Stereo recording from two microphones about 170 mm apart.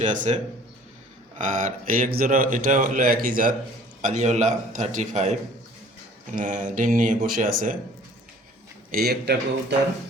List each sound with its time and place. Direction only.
0.0 s speech: 50° right (ahead or behind)
1.4 s speech: 50° right (ahead or behind)
4.0 s speech: 45° right (ahead or behind)
8.9 s speech: 65° right (ahead or behind)